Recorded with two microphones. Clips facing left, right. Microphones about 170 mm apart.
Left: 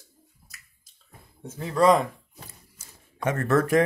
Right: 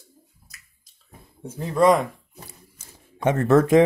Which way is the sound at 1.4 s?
10° right (ahead or behind).